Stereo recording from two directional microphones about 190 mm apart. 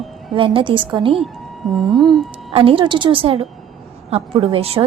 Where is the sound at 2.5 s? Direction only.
30° right (ahead or behind).